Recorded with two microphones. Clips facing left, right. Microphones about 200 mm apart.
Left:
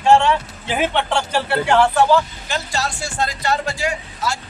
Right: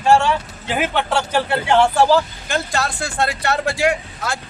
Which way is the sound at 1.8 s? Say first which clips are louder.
Right 1 dB; 30° right (ahead or behind).